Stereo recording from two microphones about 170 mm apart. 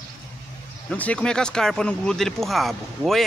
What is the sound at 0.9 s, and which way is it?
Speech, 5° left (ahead or behind).